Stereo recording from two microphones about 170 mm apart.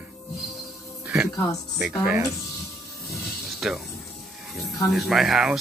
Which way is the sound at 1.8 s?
5° right (ahead or behind).